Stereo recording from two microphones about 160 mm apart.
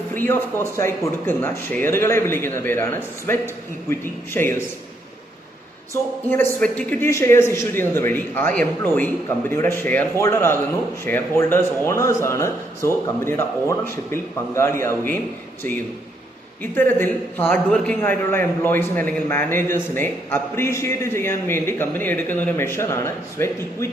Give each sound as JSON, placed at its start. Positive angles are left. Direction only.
{"t": 0.2, "sound": "a man's voice", "side_deg": 15}
{"t": 5.9, "sound": "a man's voice", "side_deg": 10}
{"t": 16.7, "sound": "a man's voice", "side_deg": 15}